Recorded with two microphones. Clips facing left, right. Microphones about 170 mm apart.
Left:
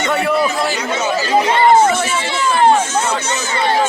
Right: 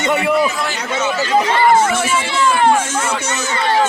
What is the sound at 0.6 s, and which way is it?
Speech, 35° left (ahead or behind).